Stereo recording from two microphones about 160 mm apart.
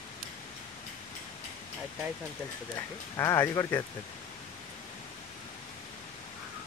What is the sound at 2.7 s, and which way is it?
Speech, 15° left (ahead or behind).